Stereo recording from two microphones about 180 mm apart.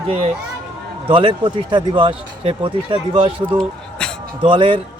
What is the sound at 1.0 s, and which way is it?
Speech, 30° right (ahead or behind).